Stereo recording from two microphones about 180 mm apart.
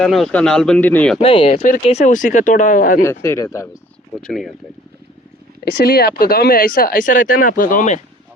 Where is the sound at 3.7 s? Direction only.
Centre (ahead or behind).